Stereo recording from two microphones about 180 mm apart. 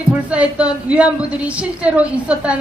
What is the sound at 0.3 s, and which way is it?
A woman's voice, 5° right (ahead or behind).